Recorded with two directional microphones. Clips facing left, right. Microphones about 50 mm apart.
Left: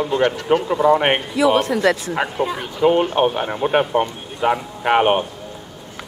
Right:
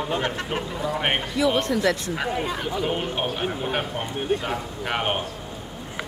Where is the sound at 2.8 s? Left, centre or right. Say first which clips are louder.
Left 14 dB; left.